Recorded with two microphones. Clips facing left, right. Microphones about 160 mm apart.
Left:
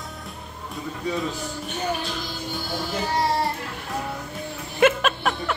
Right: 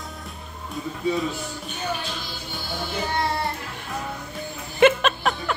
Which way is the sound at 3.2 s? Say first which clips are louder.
Left 3 dB; 35° left (ahead or behind).